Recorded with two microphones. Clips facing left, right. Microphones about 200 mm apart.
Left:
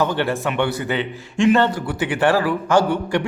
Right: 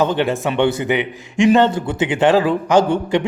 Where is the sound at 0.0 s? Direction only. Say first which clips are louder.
Right 3 dB; 20° right (ahead or behind).